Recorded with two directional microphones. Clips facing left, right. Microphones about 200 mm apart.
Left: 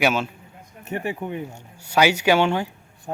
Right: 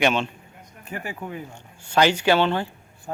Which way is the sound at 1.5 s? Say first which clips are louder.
Left 3 dB; 10° left (ahead or behind).